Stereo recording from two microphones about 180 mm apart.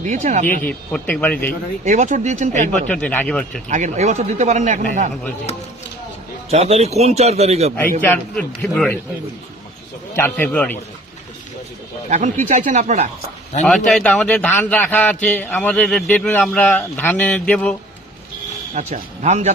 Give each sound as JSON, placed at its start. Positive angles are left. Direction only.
{"t": 0.0, "sound": "speech", "side_deg": -45}
{"t": 0.4, "sound": "a man's voice", "side_deg": 10}
{"t": 1.8, "sound": "speech", "side_deg": -40}
{"t": 2.9, "sound": "a man's voice", "side_deg": 10}
{"t": 3.7, "sound": "speech", "side_deg": -40}
{"t": 6.5, "sound": "speech", "side_deg": -35}
{"t": 8.0, "sound": "a man's voice", "side_deg": 10}
{"t": 10.2, "sound": "a man's voice", "side_deg": 10}
{"t": 12.0, "sound": "speech", "side_deg": -45}
{"t": 13.7, "sound": "a man's voice", "side_deg": 5}
{"t": 18.7, "sound": "speech", "side_deg": -40}